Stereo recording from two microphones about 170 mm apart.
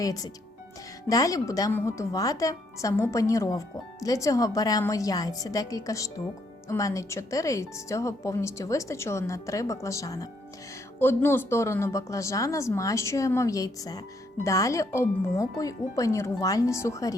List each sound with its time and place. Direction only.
0.0 s speech: 20° left (ahead or behind)